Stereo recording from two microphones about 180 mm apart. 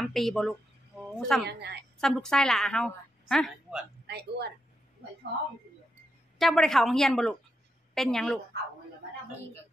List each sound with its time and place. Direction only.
0.0 s a woman's voice: centre (ahead or behind)
1.5 s a woman's voice: 65° right (ahead or behind)
2.0 s a woman's voice: centre (ahead or behind)
4.1 s a woman's voice: 65° right (ahead or behind)
6.3 s a woman's voice: centre (ahead or behind)